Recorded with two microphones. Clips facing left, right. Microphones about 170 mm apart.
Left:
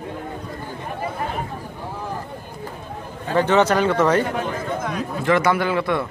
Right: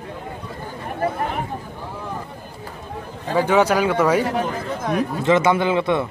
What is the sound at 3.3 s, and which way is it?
Speech, 10° right (ahead or behind).